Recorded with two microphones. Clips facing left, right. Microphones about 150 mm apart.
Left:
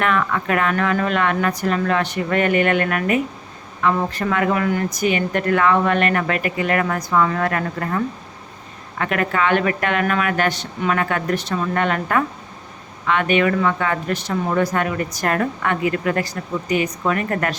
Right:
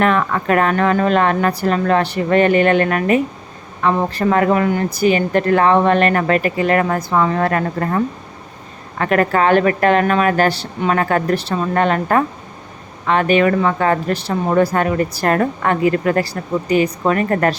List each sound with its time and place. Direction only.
0.0 s speech: 35° right (ahead or behind)